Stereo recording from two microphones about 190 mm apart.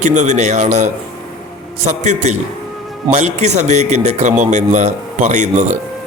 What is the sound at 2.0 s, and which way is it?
A man's voice, 40° right (ahead or behind).